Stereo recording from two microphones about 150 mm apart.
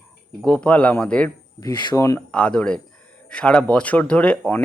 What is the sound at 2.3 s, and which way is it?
Speech, 5° left (ahead or behind).